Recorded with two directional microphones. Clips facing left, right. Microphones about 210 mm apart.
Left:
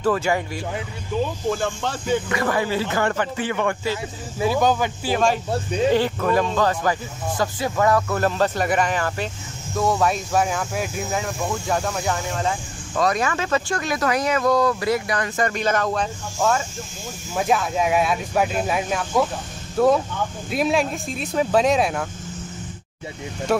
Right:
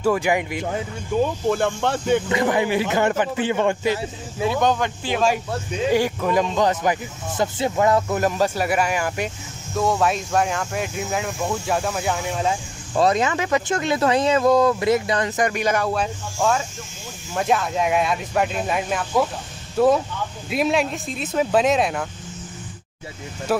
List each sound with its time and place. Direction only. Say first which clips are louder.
0.0 s speech: right 1 dB; 15° right (ahead or behind)
1.1 s speech: right 3 dB; 50° right (ahead or behind)
2.2 s speech: right 2 dB; 20° right (ahead or behind)
4.4 s speech: left 1 dB; centre (ahead or behind)
5.9 s speech: even; 10° right (ahead or behind)
9.8 s speech: even; centre (ahead or behind)
12.9 s speech: right 3 dB; 25° right (ahead or behind); by 22.0 s centre (ahead or behind)
23.5 s speech: left 1 dB; centre (ahead or behind)